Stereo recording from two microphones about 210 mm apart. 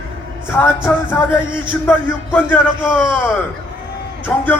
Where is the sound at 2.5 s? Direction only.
10° left (ahead or behind).